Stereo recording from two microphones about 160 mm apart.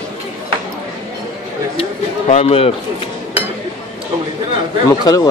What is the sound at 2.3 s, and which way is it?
Speech, 35° left (ahead or behind).